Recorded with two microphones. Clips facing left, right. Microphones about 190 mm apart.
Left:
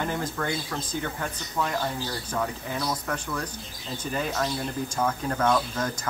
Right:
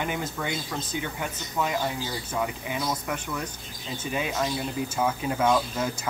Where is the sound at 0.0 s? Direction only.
10° right (ahead or behind).